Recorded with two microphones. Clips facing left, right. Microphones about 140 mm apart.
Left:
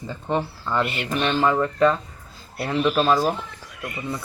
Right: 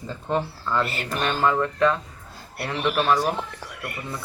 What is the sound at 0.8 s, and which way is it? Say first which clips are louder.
Speech: left 2 dB; 40° right (ahead or behind).